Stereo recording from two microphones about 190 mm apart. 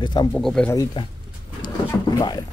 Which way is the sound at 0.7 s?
20° left (ahead or behind).